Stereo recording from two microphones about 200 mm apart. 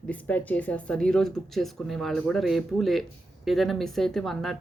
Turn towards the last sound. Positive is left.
turn(degrees=0)  # may be behind; listen again after turning